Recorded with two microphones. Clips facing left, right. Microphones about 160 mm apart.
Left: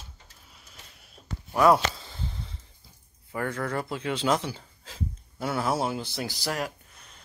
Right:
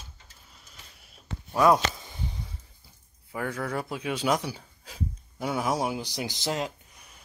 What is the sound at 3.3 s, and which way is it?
Speech, 5° right (ahead or behind).